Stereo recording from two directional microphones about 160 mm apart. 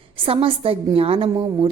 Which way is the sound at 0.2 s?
35° right (ahead or behind).